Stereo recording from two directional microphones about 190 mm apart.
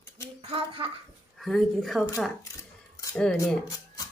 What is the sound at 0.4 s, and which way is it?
Speech, 30° right (ahead or behind).